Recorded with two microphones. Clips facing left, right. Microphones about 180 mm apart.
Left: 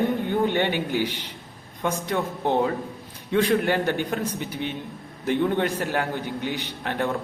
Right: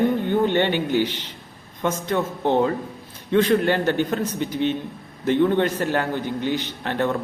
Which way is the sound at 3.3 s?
10° left (ahead or behind).